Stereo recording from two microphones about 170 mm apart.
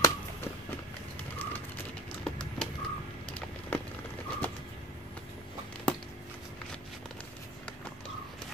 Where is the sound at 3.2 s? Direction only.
10° left (ahead or behind).